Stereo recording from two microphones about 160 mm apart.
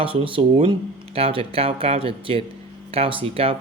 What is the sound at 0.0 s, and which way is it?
Speech, 35° right (ahead or behind).